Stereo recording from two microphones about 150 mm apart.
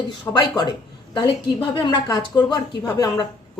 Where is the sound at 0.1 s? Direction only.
25° left (ahead or behind).